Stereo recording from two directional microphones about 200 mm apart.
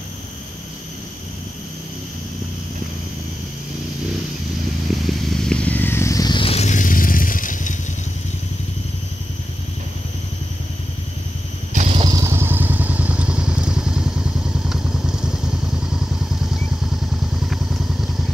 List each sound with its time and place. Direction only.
5.0 s vehicle: centre (ahead or behind); by 7.7 s 40° left (ahead or behind)
11.7 s motorcycle: 30° right (ahead or behind); by 18.1 s centre (ahead or behind)